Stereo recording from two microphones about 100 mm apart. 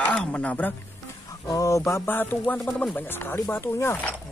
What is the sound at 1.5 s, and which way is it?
Music, 30° left (ahead or behind).